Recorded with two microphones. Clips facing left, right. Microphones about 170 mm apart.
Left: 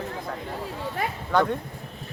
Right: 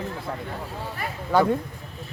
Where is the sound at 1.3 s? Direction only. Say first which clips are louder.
Right 3 dB; 5° right (ahead or behind).